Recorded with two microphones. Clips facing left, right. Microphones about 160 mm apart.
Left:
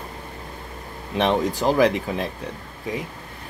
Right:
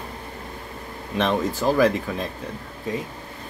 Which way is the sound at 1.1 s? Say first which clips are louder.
Left 2 dB; 15° left (ahead or behind).